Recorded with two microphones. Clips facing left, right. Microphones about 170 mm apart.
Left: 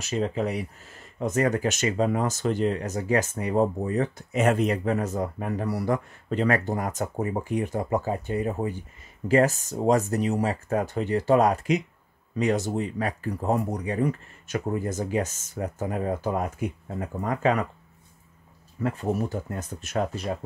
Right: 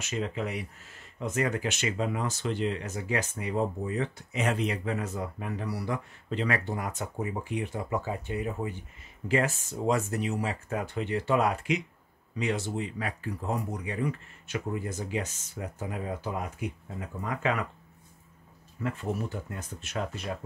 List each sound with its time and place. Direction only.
0.0 s speech: 35° left (ahead or behind)
18.8 s speech: 40° left (ahead or behind)